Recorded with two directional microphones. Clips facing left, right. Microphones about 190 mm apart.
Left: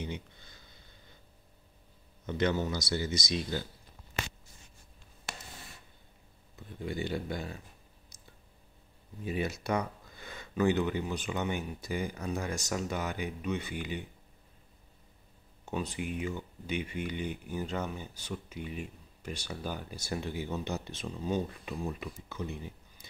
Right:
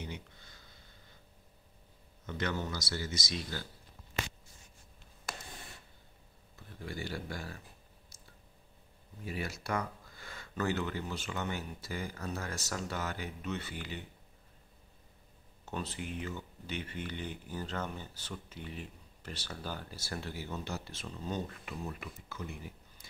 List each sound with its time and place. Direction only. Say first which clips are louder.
2.2 s speech: left 6 dB; 20° left (ahead or behind)
6.5 s speech: left 6 dB; 20° left (ahead or behind)
9.2 s speech: left 6 dB; 20° left (ahead or behind)
15.6 s speech: left 4 dB; 15° left (ahead or behind)